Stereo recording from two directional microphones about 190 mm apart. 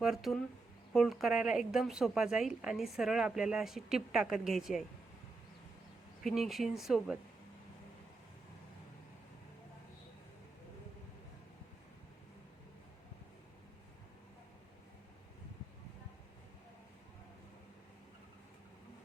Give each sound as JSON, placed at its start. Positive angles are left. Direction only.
{"t": 0.0, "sound": "speech", "side_deg": 0}
{"t": 6.2, "sound": "speech", "side_deg": 0}